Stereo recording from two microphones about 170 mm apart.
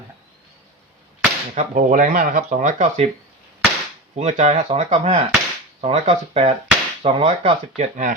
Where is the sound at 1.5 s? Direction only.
50° right (ahead or behind).